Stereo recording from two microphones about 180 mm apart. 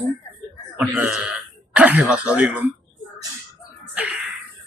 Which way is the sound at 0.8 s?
10° right (ahead or behind).